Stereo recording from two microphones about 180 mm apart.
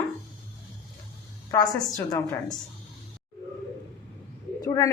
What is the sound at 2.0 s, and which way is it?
Speech, 10° left (ahead or behind).